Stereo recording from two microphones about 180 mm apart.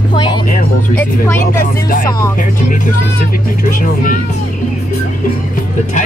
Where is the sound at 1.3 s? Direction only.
45° left (ahead or behind).